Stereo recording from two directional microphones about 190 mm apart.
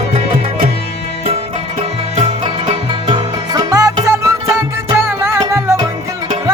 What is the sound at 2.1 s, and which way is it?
Music, 30° right (ahead or behind).